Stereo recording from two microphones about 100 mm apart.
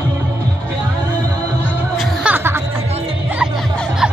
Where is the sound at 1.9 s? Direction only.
5° right (ahead or behind).